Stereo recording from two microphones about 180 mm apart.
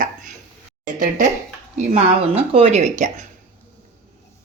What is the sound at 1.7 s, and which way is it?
Speech, 35° right (ahead or behind).